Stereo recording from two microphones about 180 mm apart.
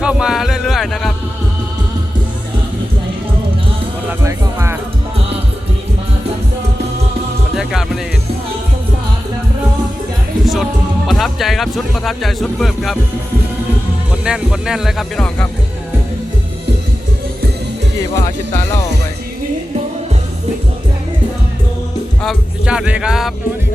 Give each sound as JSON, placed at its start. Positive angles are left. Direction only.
{"t": 0.0, "sound": "music", "side_deg": -5}
{"t": 4.2, "sound": "music", "side_deg": -15}
{"t": 7.5, "sound": "music", "side_deg": 0}
{"t": 10.4, "sound": "music", "side_deg": 0}
{"t": 14.1, "sound": "speech", "side_deg": -5}
{"t": 18.1, "sound": "speech", "side_deg": 15}
{"t": 22.2, "sound": "music", "side_deg": 0}